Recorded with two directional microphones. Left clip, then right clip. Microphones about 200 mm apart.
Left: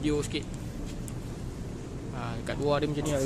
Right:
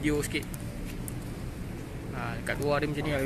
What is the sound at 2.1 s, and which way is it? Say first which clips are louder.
Speech: right 2 dB; 15° left (ahead or behind).